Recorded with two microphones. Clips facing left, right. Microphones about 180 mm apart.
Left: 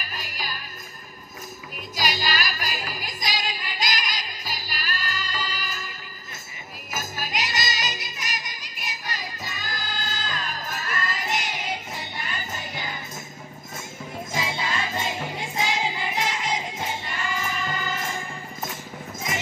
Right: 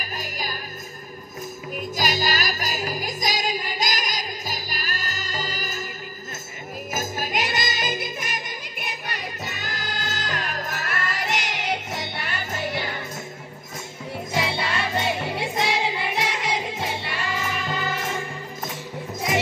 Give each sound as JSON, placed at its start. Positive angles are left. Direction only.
{"t": 0.0, "sound": "music", "side_deg": -45}
{"t": 2.0, "sound": "music", "side_deg": -45}
{"t": 6.9, "sound": "music", "side_deg": -50}
{"t": 14.3, "sound": "music", "side_deg": -70}